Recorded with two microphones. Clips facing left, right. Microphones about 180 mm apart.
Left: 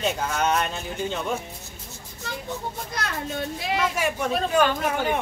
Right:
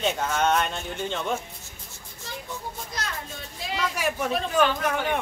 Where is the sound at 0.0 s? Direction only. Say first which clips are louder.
Even; centre (ahead or behind).